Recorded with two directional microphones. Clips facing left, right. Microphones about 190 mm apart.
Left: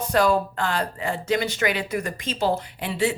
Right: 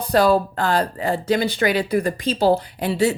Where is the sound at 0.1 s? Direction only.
35° right (ahead or behind).